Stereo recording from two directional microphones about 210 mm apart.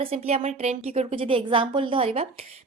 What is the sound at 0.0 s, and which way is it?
A woman's voice, 30° right (ahead or behind).